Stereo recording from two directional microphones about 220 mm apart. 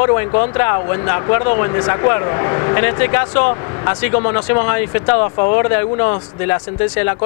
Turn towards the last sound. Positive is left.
turn(degrees=20)  # may be behind; listen again after turning